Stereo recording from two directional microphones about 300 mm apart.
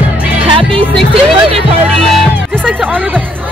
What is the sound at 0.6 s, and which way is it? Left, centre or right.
Music, centre.